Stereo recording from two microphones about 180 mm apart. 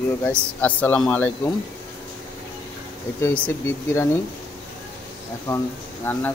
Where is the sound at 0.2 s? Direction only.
10° left (ahead or behind).